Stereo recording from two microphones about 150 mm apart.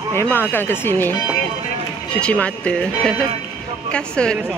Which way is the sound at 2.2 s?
10° left (ahead or behind).